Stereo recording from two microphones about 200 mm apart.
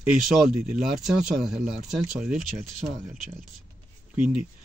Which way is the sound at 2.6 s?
40° right (ahead or behind).